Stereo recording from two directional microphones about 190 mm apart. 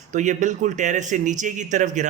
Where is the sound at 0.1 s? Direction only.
40° right (ahead or behind).